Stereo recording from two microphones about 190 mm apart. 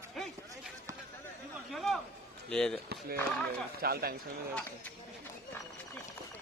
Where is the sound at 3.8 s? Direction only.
55° right (ahead or behind).